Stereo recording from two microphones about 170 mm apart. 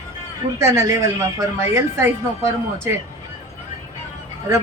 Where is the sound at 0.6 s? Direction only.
15° right (ahead or behind).